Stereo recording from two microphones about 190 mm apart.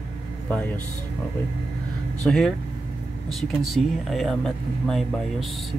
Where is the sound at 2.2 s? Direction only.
Centre (ahead or behind).